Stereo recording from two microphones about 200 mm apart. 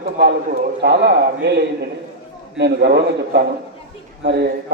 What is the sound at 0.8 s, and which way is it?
Speech, 55° right (ahead or behind).